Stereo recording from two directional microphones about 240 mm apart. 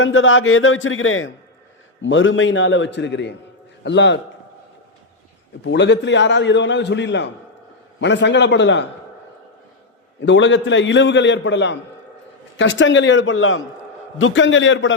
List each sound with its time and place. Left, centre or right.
0.0 s a man's voice: left
5.6 s a man's voice: left
10.2 s a man's voice: left